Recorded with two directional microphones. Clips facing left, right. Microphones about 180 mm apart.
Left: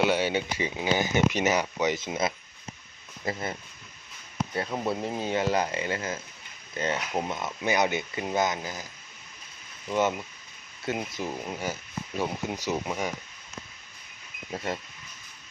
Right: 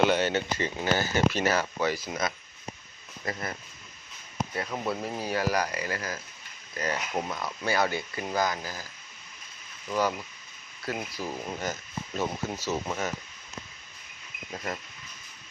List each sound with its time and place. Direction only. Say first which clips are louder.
0.1 s speech: even; 10° left (ahead or behind); by 3.5 s 25° left (ahead or behind)
4.4 s a sound: left 1 dB; 40° right (ahead or behind)
5.0 s speech: left 2 dB; 25° left (ahead or behind)
9.9 s speech: left 2 dB; 25° left (ahead or behind)
14.5 s speech: left 3 dB; 30° left (ahead or behind)